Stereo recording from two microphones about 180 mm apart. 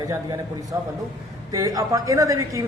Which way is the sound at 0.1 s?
20° right (ahead or behind).